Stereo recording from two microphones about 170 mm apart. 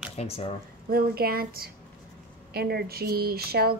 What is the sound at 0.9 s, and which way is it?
Speech, 60° right (ahead or behind).